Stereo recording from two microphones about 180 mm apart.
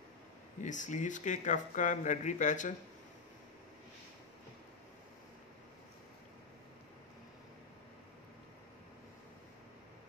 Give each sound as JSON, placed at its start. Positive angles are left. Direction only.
{"t": 0.6, "sound": "speech", "side_deg": 45}